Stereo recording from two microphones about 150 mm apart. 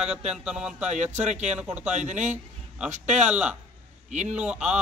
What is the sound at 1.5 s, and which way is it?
Speech, 5° right (ahead or behind).